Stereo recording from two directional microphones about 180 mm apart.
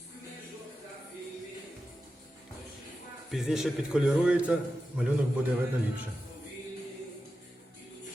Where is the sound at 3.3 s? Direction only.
Centre (ahead or behind).